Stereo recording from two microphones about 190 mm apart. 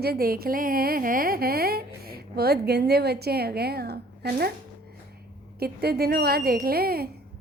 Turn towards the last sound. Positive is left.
turn(degrees=-55)  # may be behind; listen again after turning